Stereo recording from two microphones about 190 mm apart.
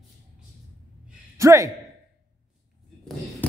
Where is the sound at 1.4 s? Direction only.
15° right (ahead or behind).